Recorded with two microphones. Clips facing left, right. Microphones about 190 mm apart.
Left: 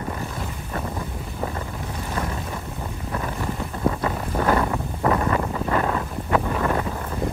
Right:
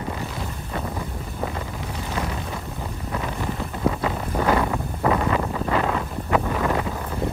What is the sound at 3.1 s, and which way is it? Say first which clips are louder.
Wind noise: even; 10° right (ahead or behind).